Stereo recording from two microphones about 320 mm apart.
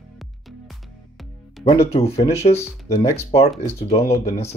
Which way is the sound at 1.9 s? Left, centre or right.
Centre.